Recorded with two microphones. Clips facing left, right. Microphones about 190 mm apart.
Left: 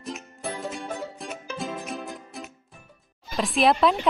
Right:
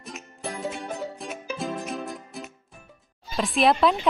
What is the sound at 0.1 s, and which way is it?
Music, centre (ahead or behind).